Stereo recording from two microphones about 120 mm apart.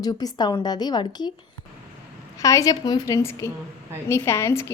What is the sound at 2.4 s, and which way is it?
A woman's voice, 30° left (ahead or behind).